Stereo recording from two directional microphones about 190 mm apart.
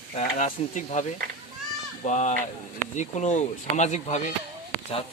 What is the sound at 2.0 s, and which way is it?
Speech, 40° left (ahead or behind).